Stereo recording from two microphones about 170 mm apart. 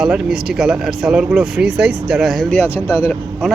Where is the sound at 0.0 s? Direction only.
5° right (ahead or behind).